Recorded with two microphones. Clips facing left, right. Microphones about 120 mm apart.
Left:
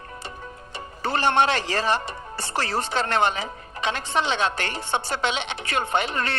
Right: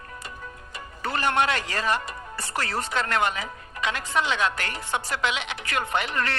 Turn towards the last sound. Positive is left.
turn(degrees=25)  # may be behind; listen again after turning